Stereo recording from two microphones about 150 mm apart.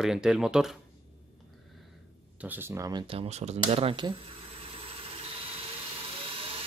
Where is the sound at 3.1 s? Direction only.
45° right (ahead or behind).